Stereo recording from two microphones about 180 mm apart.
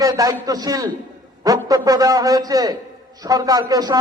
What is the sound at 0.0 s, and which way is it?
A man's voice, 20° right (ahead or behind).